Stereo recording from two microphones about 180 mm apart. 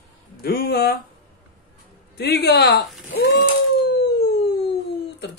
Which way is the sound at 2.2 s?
65° left (ahead or behind).